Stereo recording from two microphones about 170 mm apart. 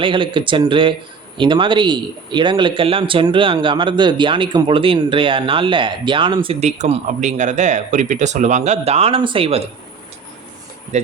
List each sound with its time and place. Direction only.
0.0 s speech: 30° right (ahead or behind)
10.9 s speech: 45° right (ahead or behind)